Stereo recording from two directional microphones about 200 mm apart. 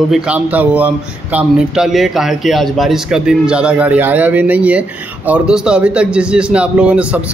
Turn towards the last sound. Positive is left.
turn(degrees=-5)  # may be behind; listen again after turning